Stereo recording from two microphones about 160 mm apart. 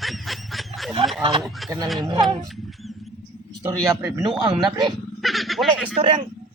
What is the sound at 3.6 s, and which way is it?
Speech, 20° right (ahead or behind).